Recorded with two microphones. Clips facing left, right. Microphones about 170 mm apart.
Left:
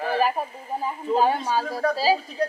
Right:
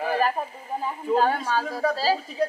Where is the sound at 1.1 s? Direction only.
10° left (ahead or behind).